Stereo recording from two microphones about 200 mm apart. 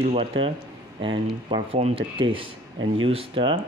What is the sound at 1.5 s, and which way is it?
Speech, 25° right (ahead or behind).